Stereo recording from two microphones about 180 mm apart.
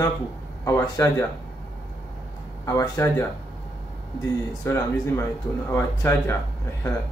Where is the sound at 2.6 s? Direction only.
15° left (ahead or behind).